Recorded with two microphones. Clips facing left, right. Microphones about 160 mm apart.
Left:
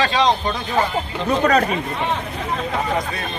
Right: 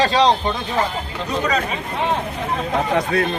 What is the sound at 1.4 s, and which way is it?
Speech, 50° left (ahead or behind).